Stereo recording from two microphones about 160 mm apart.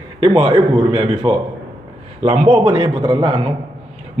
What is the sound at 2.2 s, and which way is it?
Speech, 45° right (ahead or behind).